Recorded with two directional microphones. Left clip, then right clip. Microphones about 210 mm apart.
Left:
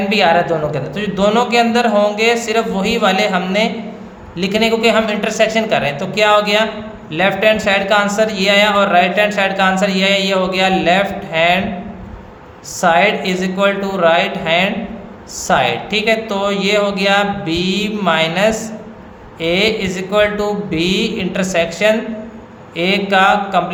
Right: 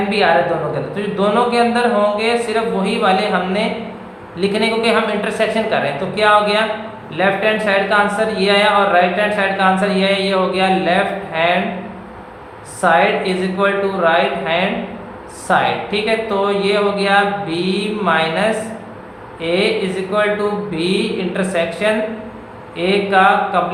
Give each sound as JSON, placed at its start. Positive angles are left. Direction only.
{"t": 0.9, "sound": "speech", "side_deg": 50}
{"t": 12.8, "sound": "speech", "side_deg": 50}